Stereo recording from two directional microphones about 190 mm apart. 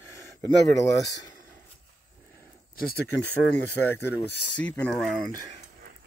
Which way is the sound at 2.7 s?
50° left (ahead or behind).